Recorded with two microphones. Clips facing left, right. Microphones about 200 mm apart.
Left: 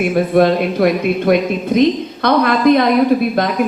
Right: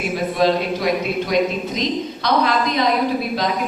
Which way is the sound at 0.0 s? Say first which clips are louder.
Left 6 dB; 55° left (ahead or behind).